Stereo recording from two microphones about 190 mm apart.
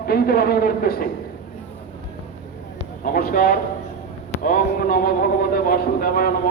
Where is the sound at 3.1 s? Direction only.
50° left (ahead or behind).